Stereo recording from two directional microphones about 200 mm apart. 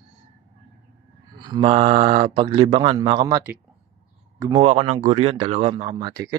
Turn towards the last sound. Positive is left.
turn(degrees=-20)  # may be behind; listen again after turning